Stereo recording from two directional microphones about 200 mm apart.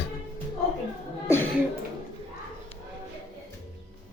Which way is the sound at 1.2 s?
10° left (ahead or behind).